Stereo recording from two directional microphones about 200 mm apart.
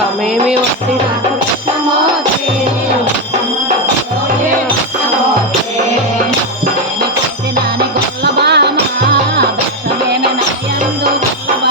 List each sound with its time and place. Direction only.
8.2 s music: 55° right (ahead or behind)